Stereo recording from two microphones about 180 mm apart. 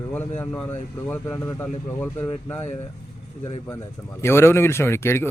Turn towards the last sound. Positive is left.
turn(degrees=15)  # may be behind; listen again after turning